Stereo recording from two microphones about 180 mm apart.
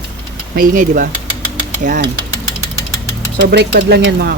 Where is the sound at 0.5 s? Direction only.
50° right (ahead or behind).